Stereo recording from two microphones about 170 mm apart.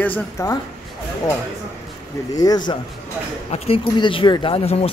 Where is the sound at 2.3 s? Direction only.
25° left (ahead or behind).